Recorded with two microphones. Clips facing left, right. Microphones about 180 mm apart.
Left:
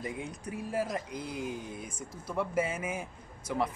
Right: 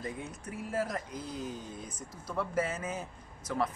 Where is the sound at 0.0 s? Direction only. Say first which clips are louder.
Left 2 dB; 15° left (ahead or behind).